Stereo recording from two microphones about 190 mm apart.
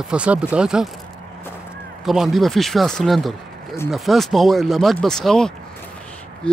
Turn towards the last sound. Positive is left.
turn(degrees=5)  # may be behind; listen again after turning